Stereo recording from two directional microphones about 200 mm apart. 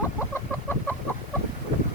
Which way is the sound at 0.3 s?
10° left (ahead or behind).